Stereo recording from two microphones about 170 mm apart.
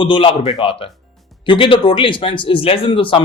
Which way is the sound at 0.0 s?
30° left (ahead or behind).